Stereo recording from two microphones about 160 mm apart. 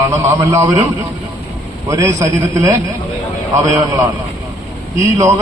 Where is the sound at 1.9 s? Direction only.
20° right (ahead or behind).